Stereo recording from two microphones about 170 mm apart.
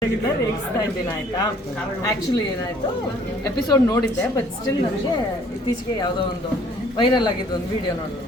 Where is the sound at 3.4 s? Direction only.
20° left (ahead or behind).